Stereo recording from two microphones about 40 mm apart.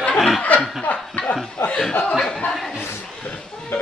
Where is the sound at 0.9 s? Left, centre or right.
Left.